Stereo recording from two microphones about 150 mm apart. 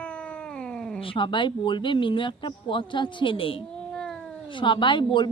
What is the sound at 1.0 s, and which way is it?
Speech, 35° left (ahead or behind).